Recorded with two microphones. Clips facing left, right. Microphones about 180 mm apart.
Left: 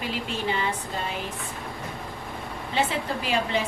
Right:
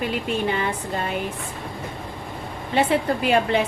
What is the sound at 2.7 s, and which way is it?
Speech, 60° right (ahead or behind).